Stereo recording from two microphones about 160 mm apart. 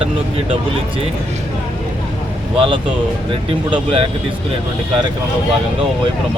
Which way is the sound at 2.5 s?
35° right (ahead or behind).